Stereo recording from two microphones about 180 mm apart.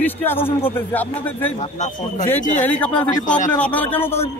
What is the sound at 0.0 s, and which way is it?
A man's voice, 10° left (ahead or behind).